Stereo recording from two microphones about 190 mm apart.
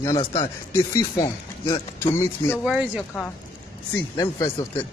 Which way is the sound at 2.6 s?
5° right (ahead or behind).